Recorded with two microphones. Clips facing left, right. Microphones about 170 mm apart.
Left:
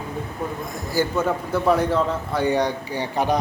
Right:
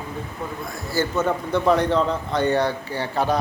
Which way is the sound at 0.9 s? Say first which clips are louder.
Even; 10° left (ahead or behind).